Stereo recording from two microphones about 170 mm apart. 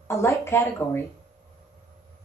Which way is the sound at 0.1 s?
15° left (ahead or behind).